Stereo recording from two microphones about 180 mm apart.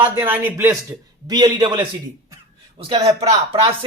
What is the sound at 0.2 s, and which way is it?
A man's voice, 10° right (ahead or behind).